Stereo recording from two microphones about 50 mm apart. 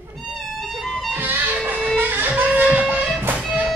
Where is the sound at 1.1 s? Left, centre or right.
Right.